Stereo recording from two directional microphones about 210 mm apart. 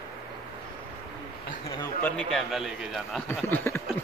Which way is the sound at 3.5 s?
10° left (ahead or behind).